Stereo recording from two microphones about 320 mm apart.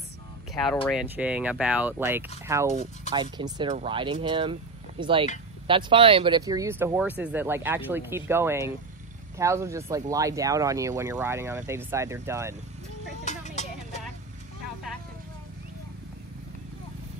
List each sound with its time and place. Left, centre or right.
0.8 s speech: centre
2.7 s speech: centre
13.2 s vehicle: left